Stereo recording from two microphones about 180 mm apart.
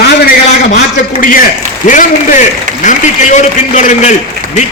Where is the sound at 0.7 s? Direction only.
45° left (ahead or behind).